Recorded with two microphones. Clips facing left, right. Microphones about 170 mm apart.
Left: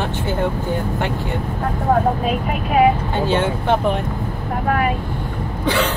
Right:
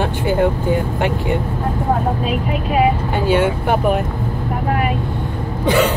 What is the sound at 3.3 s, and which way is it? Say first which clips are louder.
Speech: right 3 dB; 10° right (ahead or behind).